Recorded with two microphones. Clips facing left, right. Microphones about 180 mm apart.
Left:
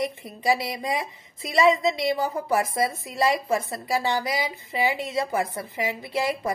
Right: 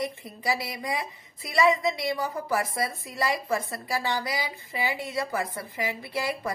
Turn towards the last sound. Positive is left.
turn(degrees=20)  # may be behind; listen again after turning